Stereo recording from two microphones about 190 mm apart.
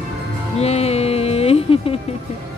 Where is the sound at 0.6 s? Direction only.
35° left (ahead or behind).